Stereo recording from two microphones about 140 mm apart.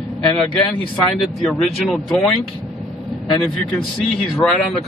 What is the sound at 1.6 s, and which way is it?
Speech, centre (ahead or behind).